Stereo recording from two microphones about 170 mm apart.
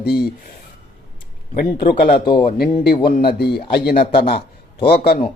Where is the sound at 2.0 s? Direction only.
60° left (ahead or behind).